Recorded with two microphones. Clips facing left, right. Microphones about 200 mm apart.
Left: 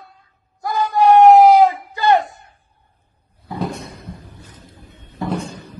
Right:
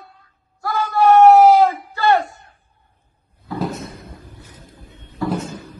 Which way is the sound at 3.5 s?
Centre (ahead or behind).